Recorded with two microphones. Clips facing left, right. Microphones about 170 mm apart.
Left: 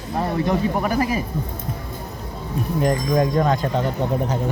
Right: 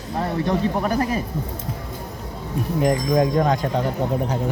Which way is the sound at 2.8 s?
15° right (ahead or behind).